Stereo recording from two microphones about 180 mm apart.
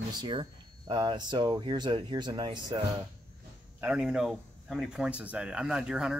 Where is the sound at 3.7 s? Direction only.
5° right (ahead or behind).